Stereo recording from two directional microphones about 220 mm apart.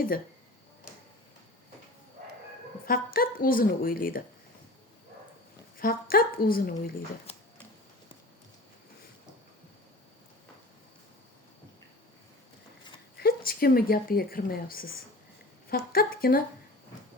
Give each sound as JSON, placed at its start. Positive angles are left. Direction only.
{"t": 2.8, "sound": "speech", "side_deg": 40}
{"t": 5.7, "sound": "speech", "side_deg": 40}
{"t": 13.1, "sound": "speech", "side_deg": 45}